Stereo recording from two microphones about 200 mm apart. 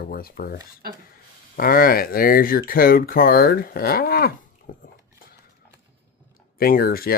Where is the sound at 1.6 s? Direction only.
45° left (ahead or behind).